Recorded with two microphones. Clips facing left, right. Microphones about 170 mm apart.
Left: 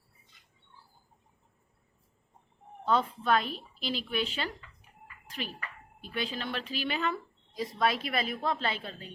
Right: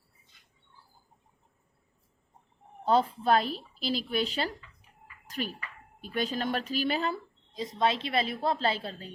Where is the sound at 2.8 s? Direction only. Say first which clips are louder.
Right 3 dB; 35° right (ahead or behind).